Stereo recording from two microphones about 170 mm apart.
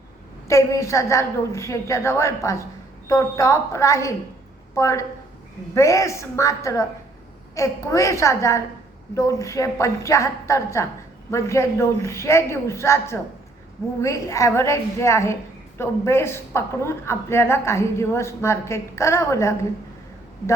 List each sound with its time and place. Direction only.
0.4 s a woman's voice: 20° left (ahead or behind)